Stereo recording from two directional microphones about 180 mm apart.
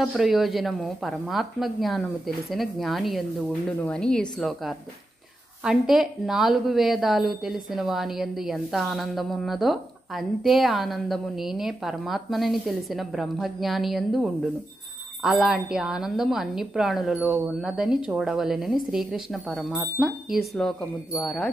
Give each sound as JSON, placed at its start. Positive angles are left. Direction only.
{"t": 0.0, "sound": "a woman's voice", "side_deg": 0}